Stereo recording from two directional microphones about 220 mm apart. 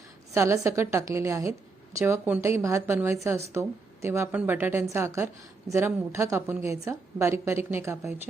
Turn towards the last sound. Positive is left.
turn(degrees=-10)  # may be behind; listen again after turning